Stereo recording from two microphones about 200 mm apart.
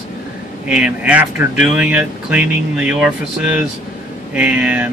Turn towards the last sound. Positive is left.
turn(degrees=-5)  # may be behind; listen again after turning